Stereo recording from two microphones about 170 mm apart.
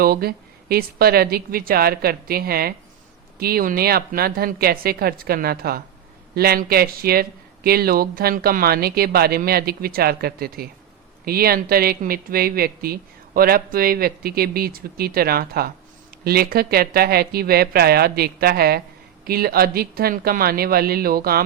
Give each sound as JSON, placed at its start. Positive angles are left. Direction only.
{"t": 0.0, "sound": "speech", "side_deg": -60}